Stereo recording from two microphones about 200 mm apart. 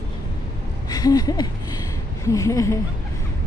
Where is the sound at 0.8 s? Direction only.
20° left (ahead or behind).